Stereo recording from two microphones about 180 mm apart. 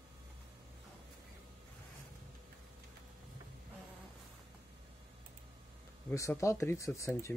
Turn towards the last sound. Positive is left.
turn(degrees=15)  # may be behind; listen again after turning